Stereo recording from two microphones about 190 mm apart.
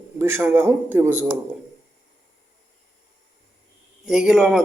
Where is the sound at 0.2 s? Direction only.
10° right (ahead or behind).